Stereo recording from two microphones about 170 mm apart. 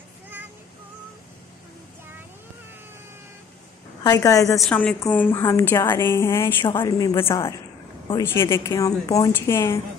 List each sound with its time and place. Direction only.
4.0 s a woman's voice: 20° left (ahead or behind)
4.6 s a woman's voice: 10° left (ahead or behind)
6.6 s a woman's voice: 25° left (ahead or behind)